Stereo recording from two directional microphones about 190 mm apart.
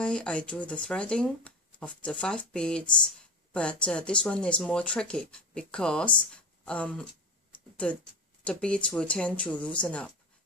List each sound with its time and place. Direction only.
0.0 s speech: 5° left (ahead or behind)